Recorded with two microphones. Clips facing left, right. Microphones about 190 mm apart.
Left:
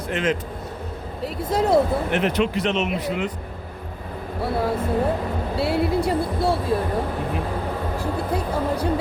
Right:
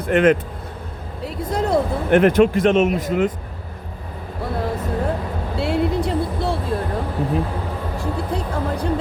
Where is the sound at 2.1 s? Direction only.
50° right (ahead or behind).